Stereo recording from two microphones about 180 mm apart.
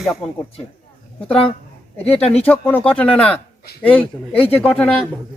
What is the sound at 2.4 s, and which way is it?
Speech, 10° left (ahead or behind).